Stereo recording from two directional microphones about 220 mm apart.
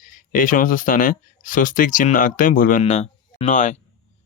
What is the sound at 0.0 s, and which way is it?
Speech, 40° left (ahead or behind).